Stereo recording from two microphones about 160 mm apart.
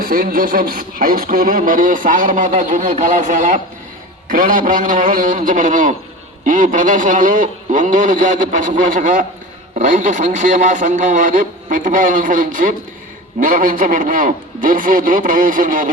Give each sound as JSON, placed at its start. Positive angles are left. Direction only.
{"t": 0.0, "sound": "radio", "side_deg": -65}
{"t": 6.4, "sound": "a man's voice", "side_deg": -55}
{"t": 9.7, "sound": "radio", "side_deg": -55}